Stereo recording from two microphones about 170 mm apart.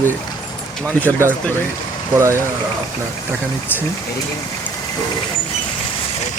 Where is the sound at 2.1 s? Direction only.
15° right (ahead or behind).